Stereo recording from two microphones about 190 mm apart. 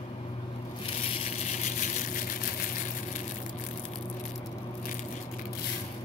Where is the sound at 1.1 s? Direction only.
35° left (ahead or behind).